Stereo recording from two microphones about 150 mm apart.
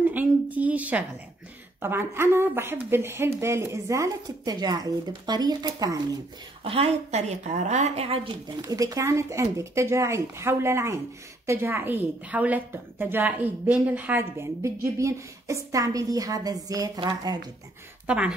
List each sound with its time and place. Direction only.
0.0 s a woman's voice: 10° right (ahead or behind); by 5.9 s 25° right (ahead or behind)
6.6 s speech: 40° right (ahead or behind)
8.6 s a woman's voice: 25° right (ahead or behind)
18.0 s speech: 10° right (ahead or behind)